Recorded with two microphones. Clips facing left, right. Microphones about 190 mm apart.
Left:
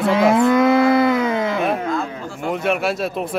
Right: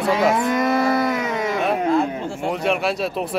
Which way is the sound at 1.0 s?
60° left (ahead or behind).